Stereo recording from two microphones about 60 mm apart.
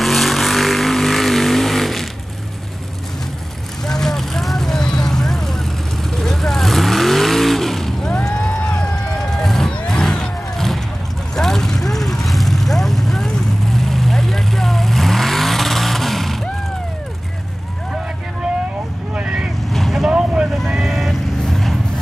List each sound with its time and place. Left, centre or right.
0.0 s vehicle: centre
3.8 s vehicle: centre
8.1 s run: centre
9.8 s vehicle: centre
19.1 s vehicle: centre
19.7 s vehicle: centre
20.1 s vehicle: centre
20.5 s vehicle: centre